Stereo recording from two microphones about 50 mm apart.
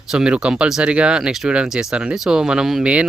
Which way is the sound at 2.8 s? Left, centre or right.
Right.